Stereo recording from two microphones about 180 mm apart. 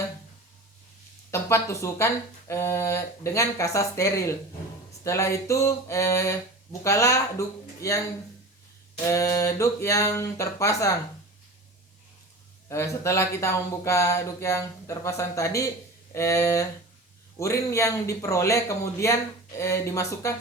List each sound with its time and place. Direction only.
1.3 s speech: 15° left (ahead or behind)
9.0 s speech: 15° left (ahead or behind)
12.6 s speech: 15° left (ahead or behind)